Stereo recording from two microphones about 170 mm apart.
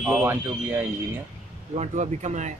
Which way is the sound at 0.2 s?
10° right (ahead or behind).